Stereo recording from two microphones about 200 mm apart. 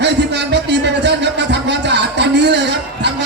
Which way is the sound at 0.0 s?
60° right (ahead or behind).